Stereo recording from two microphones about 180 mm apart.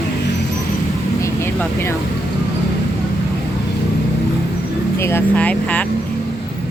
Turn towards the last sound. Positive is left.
turn(degrees=10)  # may be behind; listen again after turning